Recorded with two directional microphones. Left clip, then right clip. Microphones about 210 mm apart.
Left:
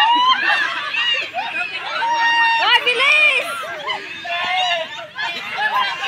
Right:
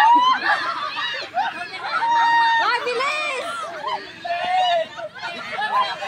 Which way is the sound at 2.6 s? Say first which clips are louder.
Left 5 dB; 55° right (ahead or behind).